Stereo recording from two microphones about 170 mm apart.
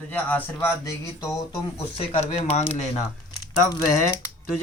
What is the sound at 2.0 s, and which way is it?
Speech, 35° left (ahead or behind).